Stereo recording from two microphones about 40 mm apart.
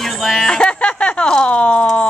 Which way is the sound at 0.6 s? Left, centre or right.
Left.